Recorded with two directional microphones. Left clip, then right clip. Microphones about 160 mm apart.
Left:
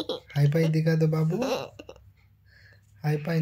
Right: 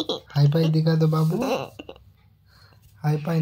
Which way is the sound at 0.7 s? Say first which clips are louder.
Right 3 dB; 20° left (ahead or behind).